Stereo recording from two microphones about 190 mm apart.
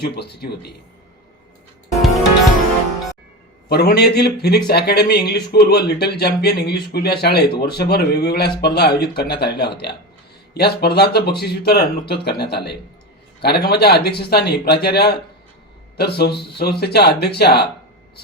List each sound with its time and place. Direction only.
0.0 s speech: 60° left (ahead or behind)
3.7 s speech: 55° left (ahead or behind)